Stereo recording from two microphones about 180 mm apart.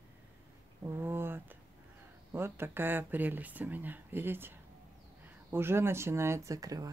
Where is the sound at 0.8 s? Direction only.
15° right (ahead or behind).